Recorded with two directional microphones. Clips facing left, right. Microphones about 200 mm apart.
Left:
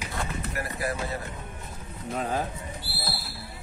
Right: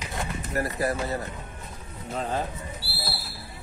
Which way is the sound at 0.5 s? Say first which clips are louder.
Right 6 dB; 40° right (ahead or behind).